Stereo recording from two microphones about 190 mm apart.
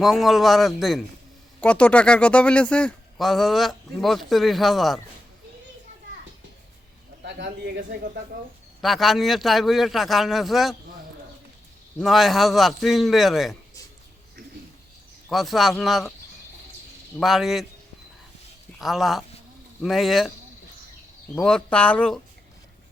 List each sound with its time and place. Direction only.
0.0 s speech: centre (ahead or behind)
7.2 s a man's voice: 60° right (ahead or behind)
8.8 s speech: centre (ahead or behind)
11.9 s speech: centre (ahead or behind)
15.3 s speech: centre (ahead or behind)
17.2 s speech: centre (ahead or behind)
18.8 s speech: centre (ahead or behind)
21.3 s speech: 5° left (ahead or behind)